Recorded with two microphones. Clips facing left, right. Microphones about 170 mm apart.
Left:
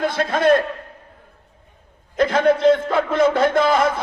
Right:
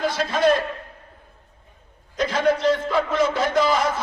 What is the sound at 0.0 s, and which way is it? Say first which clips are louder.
Speech: left 2 dB; 55° left (ahead or behind).